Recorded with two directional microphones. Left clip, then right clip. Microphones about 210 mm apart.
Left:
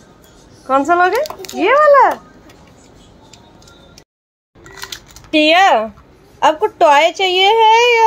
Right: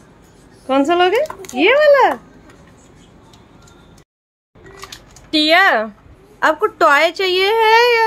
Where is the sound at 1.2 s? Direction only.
10° left (ahead or behind).